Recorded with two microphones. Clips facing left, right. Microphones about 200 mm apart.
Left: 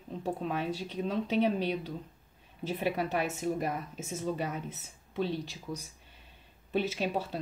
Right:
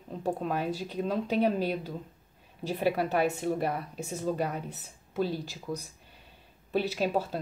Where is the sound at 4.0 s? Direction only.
Centre (ahead or behind).